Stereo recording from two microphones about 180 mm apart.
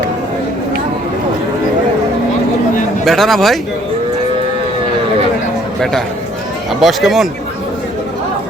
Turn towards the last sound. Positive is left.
turn(degrees=0)  # may be behind; listen again after turning